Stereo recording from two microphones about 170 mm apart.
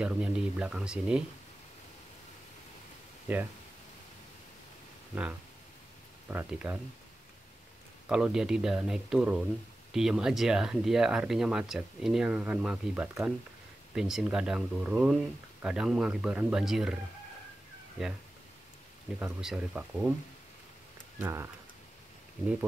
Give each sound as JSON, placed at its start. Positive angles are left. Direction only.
{"t": 0.0, "sound": "speech", "side_deg": -5}
{"t": 6.3, "sound": "speech", "side_deg": -10}
{"t": 8.1, "sound": "speech", "side_deg": -5}
{"t": 19.1, "sound": "speech", "side_deg": -10}
{"t": 21.2, "sound": "speech", "side_deg": -15}